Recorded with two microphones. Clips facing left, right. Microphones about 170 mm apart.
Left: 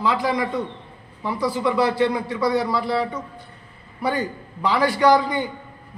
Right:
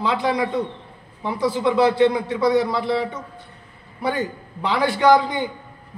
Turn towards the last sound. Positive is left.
turn(degrees=-25)  # may be behind; listen again after turning